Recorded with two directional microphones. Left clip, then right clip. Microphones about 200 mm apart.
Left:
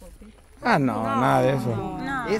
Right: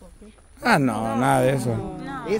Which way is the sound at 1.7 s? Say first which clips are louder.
Left 1 dB; 45° left (ahead or behind).